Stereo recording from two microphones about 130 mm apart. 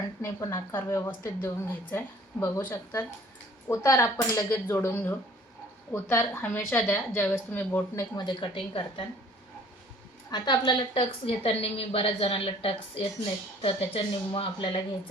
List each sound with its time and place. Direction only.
0.2 s a woman's voice: 25° left (ahead or behind)
8.1 s a woman's voice: 35° left (ahead or behind)
10.3 s a woman's voice: 35° left (ahead or behind)